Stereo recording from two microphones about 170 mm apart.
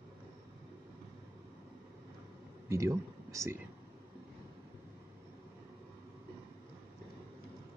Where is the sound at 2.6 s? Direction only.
15° right (ahead or behind).